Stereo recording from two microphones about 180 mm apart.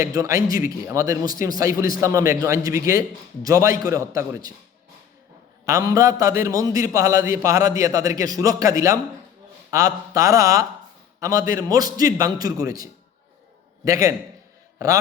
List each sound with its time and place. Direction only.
0.0 s a man's voice: 20° right (ahead or behind)
5.6 s a man's voice: 20° right (ahead or behind)